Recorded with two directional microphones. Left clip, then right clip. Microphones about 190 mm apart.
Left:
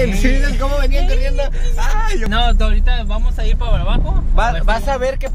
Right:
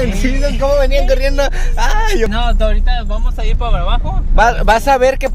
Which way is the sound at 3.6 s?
10° right (ahead or behind).